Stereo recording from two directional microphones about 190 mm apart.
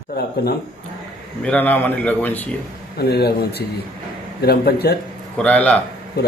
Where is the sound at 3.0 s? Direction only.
55° left (ahead or behind).